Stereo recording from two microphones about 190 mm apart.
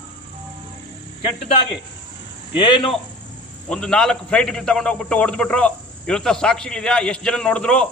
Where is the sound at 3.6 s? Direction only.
5° left (ahead or behind).